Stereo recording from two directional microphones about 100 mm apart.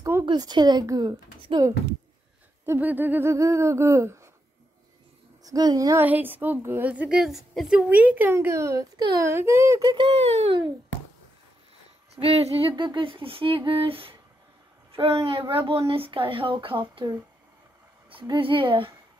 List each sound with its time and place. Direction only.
0.2 s a child's voice: 50° right (ahead or behind)
2.6 s a woman's voice: 20° right (ahead or behind)
5.4 s a child's voice: 40° right (ahead or behind)
5.9 s a woman's voice: 20° right (ahead or behind)
9.9 s speech: 75° right (ahead or behind)
12.2 s speech: 80° right; by 17.0 s 60° right (ahead or behind)
18.2 s speech: 55° right (ahead or behind)